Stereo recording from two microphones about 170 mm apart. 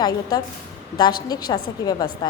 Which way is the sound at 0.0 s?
25° left (ahead or behind).